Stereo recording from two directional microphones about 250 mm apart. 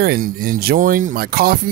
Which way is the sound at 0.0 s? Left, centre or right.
Right.